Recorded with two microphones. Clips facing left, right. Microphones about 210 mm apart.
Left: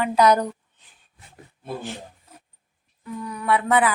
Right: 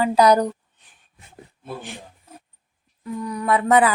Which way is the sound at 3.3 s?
40° right (ahead or behind).